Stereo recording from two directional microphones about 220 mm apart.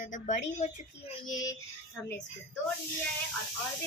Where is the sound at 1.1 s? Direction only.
20° left (ahead or behind).